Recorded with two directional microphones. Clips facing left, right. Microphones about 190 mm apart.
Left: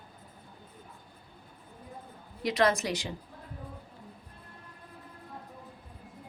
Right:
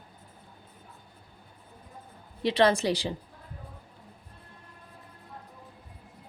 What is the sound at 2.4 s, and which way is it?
Speech, 30° right (ahead or behind).